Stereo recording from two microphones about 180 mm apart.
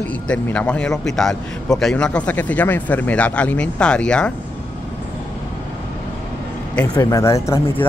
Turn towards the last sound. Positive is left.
turn(degrees=15)  # may be behind; listen again after turning